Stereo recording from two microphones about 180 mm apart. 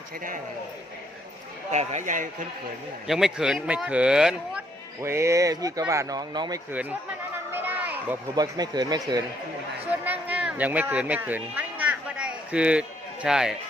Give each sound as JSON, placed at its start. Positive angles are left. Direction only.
{"t": 1.7, "sound": "speech", "side_deg": -40}
{"t": 3.1, "sound": "speech", "side_deg": 0}
{"t": 5.0, "sound": "speech", "side_deg": -15}
{"t": 7.5, "sound": "children playing", "side_deg": -10}
{"t": 8.4, "sound": "speech", "side_deg": -20}
{"t": 9.9, "sound": "speech", "side_deg": -10}